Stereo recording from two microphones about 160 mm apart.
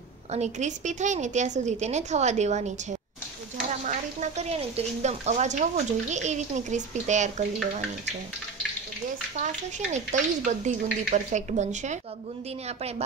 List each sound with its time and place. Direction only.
0.3 s speech: 45° right (ahead or behind)
3.8 s speech: 50° right (ahead or behind)
9.9 s speech: 50° right (ahead or behind)